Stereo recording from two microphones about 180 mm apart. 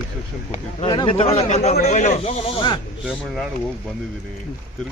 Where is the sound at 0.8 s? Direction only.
25° left (ahead or behind).